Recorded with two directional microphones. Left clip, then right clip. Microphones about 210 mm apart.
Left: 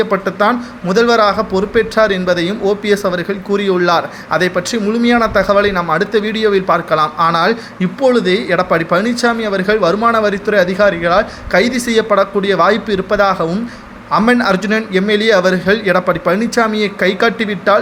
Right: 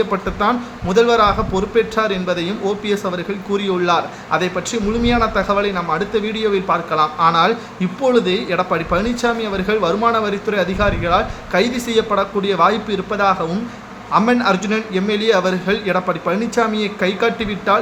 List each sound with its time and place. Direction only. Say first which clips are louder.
0.0 s speech: left 4 dB; 25° left (ahead or behind)